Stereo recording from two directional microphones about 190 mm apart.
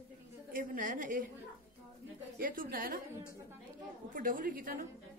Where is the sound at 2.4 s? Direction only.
50° right (ahead or behind).